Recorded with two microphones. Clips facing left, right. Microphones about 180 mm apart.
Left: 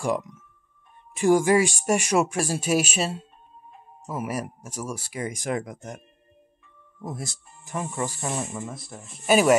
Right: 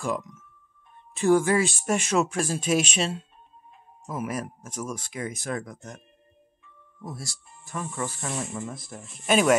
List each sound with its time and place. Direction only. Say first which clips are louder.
0.0 s speech: left 3 dB; 10° left (ahead or behind)
7.6 s speech: left 3 dB; 15° left (ahead or behind)
8.4 s speech: left 1 dB; 5° left (ahead or behind)